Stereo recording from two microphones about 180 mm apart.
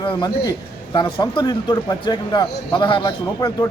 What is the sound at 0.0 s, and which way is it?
A man's voice, 25° left (ahead or behind).